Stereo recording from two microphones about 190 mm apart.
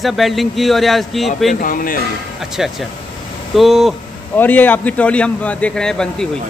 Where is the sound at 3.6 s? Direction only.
Centre (ahead or behind).